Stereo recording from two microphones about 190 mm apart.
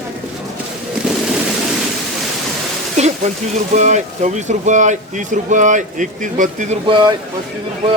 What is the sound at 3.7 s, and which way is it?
Speech, 40° right (ahead or behind).